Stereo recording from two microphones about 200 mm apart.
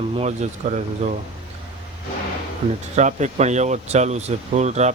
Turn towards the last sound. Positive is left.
turn(degrees=-35)  # may be behind; listen again after turning